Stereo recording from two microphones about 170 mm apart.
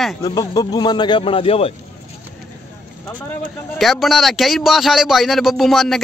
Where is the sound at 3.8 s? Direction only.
Centre (ahead or behind).